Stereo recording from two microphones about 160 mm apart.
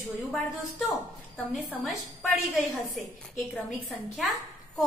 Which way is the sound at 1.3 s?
5° left (ahead or behind).